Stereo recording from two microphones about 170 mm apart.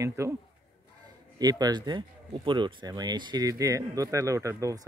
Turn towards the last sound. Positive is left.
turn(degrees=-20)  # may be behind; listen again after turning